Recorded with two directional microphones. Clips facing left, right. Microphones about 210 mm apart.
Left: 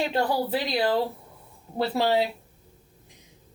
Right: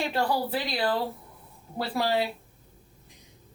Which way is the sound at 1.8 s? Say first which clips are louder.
Left 4 dB; 25° left (ahead or behind).